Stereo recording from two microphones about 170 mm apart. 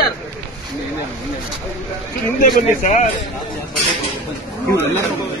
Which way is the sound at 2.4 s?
45° left (ahead or behind).